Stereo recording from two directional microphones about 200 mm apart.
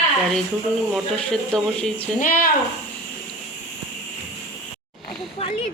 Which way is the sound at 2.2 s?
40° left (ahead or behind).